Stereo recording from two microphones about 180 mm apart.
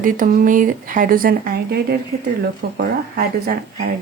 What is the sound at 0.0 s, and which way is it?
Speech, 50° right (ahead or behind).